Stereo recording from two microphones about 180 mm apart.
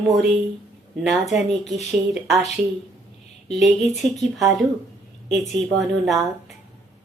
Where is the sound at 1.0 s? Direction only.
Centre (ahead or behind).